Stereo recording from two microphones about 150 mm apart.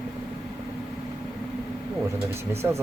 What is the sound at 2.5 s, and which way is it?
Speech, 15° right (ahead or behind).